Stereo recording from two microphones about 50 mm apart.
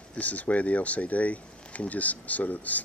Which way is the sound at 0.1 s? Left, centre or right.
Left.